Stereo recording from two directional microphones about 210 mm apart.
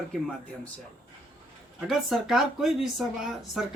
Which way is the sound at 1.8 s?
Centre (ahead or behind).